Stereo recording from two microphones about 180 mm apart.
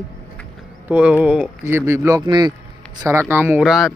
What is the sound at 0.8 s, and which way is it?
Speech, 10° right (ahead or behind).